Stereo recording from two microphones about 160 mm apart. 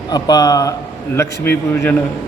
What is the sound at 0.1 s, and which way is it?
A man's voice, 25° left (ahead or behind).